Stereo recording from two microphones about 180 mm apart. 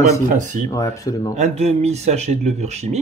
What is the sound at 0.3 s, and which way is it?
Speech, 45° right (ahead or behind).